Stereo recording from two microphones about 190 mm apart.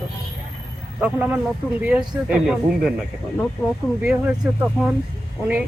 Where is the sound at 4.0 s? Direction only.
5° right (ahead or behind).